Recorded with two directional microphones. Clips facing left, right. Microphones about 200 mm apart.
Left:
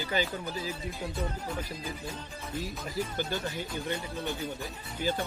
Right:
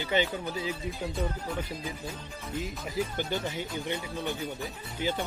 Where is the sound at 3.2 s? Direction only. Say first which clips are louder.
Right 1 dB; 20° right (ahead or behind).